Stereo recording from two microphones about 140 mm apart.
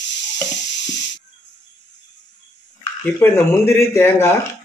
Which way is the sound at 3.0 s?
15° left (ahead or behind).